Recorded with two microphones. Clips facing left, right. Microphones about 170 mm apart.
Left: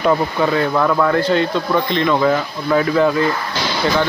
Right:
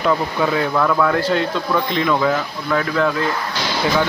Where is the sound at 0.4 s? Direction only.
5° right (ahead or behind).